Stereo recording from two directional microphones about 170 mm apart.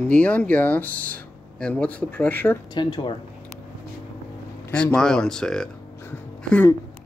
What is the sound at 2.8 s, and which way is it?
Speech, 25° left (ahead or behind).